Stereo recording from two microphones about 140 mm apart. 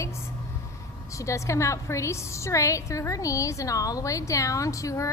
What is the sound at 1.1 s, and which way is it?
A woman's voice, 20° left (ahead or behind).